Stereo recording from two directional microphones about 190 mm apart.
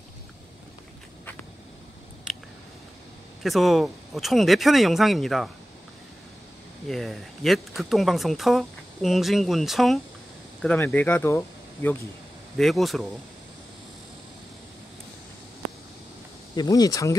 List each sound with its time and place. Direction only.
3.4 s speech: centre (ahead or behind)
6.9 s speech: centre (ahead or behind)
12.5 s speech: centre (ahead or behind)
16.5 s speech: 20° left (ahead or behind)